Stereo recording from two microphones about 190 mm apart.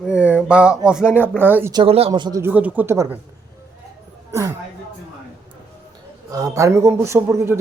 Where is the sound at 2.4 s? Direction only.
10° right (ahead or behind).